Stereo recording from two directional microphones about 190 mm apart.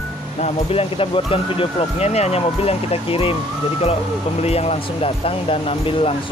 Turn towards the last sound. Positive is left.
turn(degrees=30)  # may be behind; listen again after turning